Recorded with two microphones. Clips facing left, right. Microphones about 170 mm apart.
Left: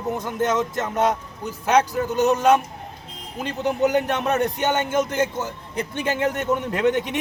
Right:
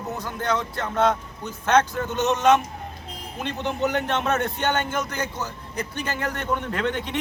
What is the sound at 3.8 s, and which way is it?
A man's voice, 15° left (ahead or behind).